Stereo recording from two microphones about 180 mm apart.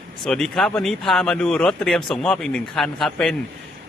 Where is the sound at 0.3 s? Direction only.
Centre (ahead or behind).